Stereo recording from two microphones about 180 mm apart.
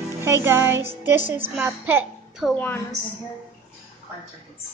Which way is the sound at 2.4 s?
Centre (ahead or behind).